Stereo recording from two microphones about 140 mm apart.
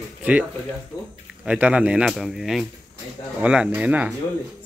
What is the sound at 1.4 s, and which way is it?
A man's voice, 10° right (ahead or behind).